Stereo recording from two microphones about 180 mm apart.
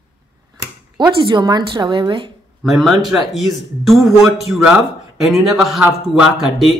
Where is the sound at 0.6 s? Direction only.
20° right (ahead or behind).